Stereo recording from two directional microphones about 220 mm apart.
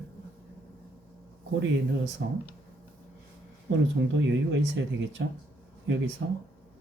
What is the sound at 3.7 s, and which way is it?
Speech, 55° right (ahead or behind).